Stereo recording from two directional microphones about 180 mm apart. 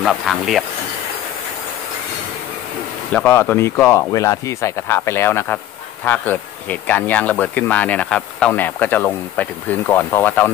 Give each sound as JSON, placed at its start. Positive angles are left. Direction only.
{"t": 0.0, "sound": "speech", "side_deg": 0}
{"t": 3.1, "sound": "speech", "side_deg": 10}